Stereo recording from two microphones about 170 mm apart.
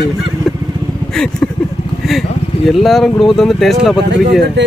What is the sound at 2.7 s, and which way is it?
Speech, centre (ahead or behind).